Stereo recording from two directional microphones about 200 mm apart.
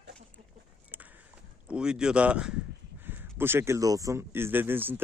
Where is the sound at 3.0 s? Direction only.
10° right (ahead or behind).